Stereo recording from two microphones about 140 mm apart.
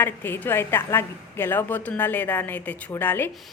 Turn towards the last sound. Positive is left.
turn(degrees=15)  # may be behind; listen again after turning